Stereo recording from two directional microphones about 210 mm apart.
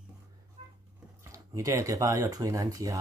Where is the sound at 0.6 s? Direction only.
30° right (ahead or behind).